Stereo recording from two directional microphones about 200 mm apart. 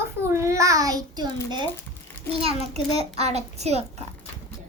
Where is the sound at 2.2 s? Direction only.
30° right (ahead or behind).